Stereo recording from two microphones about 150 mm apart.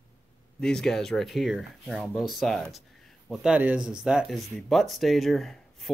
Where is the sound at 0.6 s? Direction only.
5° left (ahead or behind).